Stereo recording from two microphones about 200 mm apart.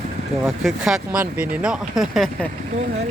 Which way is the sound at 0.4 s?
Centre (ahead or behind).